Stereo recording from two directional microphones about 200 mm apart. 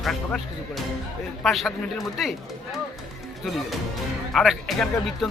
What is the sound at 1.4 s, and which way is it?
Speech, centre (ahead or behind).